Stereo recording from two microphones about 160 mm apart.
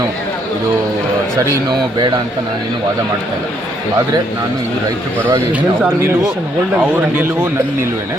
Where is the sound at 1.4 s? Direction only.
25° right (ahead or behind).